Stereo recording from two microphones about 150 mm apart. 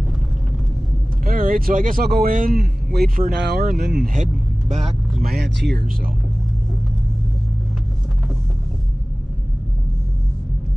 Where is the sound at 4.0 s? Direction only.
60° right (ahead or behind).